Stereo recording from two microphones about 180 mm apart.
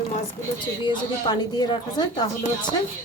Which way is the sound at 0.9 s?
25° left (ahead or behind).